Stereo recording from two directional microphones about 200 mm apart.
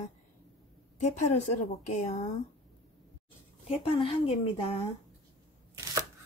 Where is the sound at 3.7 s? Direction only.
30° left (ahead or behind).